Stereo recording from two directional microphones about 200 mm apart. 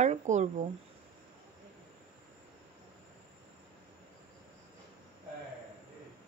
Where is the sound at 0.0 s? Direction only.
35° right (ahead or behind).